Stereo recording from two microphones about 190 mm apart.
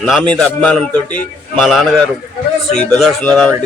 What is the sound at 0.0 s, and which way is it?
Speech, 5° left (ahead or behind).